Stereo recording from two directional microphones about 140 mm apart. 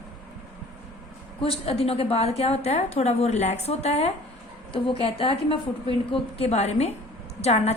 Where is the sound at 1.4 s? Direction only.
40° left (ahead or behind).